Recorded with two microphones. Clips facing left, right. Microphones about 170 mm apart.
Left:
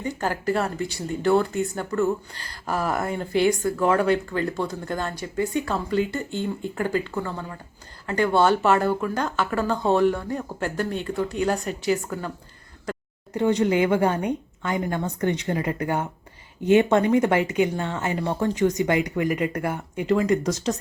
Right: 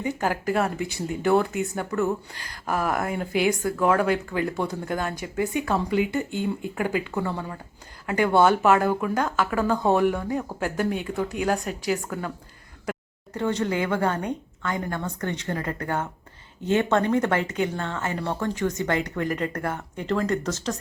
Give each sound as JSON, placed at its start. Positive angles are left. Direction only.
{"t": 0.2, "sound": "speech", "side_deg": -10}
{"t": 13.3, "sound": "speech", "side_deg": 15}